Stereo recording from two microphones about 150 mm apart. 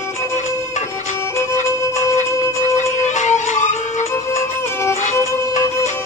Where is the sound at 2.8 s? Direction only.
50° left (ahead or behind).